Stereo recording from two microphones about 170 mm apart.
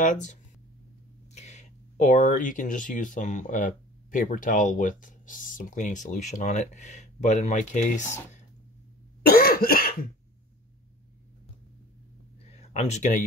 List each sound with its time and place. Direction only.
0.0 s speech: 45° left (ahead or behind)
9.2 s cough: 60° left (ahead or behind)
12.4 s a sound: 40° left (ahead or behind)